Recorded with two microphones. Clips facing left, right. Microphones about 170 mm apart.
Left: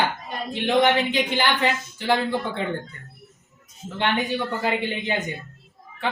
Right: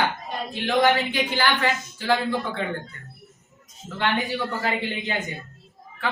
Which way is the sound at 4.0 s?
20° left (ahead or behind).